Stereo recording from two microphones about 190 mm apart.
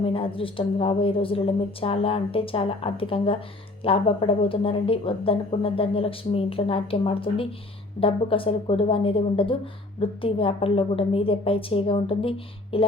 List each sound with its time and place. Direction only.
0.0 s a woman's voice: 30° left (ahead or behind)